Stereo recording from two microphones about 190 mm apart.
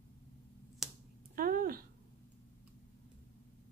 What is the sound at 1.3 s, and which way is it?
Speech, 50° right (ahead or behind).